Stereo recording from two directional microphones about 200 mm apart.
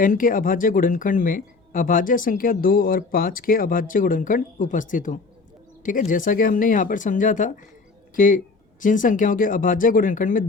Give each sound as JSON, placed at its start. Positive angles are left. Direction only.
{"t": 0.0, "sound": "speech", "side_deg": 45}